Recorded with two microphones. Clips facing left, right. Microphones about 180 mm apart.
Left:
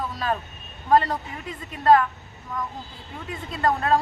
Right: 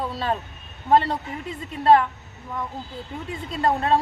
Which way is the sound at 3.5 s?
25° right (ahead or behind).